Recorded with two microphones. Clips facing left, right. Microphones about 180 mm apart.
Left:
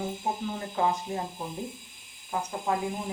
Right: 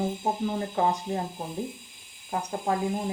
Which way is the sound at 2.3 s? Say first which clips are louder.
Right 2 dB; 35° right (ahead or behind).